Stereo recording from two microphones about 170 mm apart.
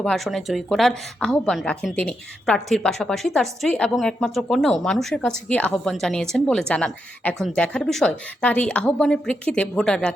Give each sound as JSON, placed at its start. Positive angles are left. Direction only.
{"t": 0.0, "sound": "a woman's voice", "side_deg": 0}